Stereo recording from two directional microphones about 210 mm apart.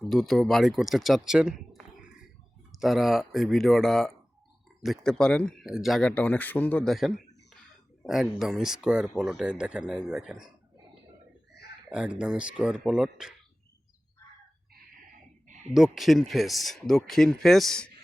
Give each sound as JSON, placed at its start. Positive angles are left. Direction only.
{"t": 0.1, "sound": "speech", "side_deg": 0}
{"t": 11.9, "sound": "speech", "side_deg": -5}
{"t": 15.7, "sound": "speech", "side_deg": 0}